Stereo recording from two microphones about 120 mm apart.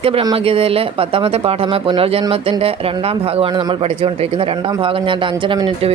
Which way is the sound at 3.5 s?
35° right (ahead or behind).